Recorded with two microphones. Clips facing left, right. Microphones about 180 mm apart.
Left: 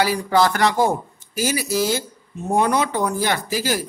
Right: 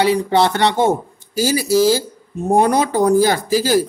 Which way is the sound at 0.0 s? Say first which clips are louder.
Right 3 dB; 25° right (ahead or behind).